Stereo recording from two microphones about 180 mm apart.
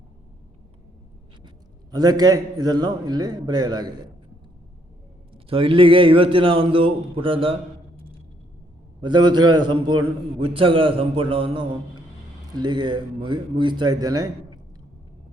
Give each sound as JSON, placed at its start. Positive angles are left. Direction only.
{"t": 1.9, "sound": "a man's voice", "side_deg": -20}
{"t": 5.3, "sound": "a man's voice", "side_deg": -30}
{"t": 7.9, "sound": "a sound", "side_deg": -30}
{"t": 9.0, "sound": "a man's voice", "side_deg": -25}